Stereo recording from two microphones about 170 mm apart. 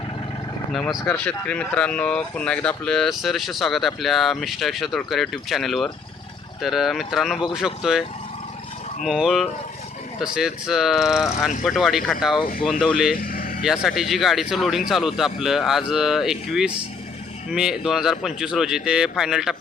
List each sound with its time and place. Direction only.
0.7 s speech: centre (ahead or behind)
9.0 s speech: centre (ahead or behind)
13.2 s vehicle: 60° left (ahead or behind)
13.6 s speech: centre (ahead or behind)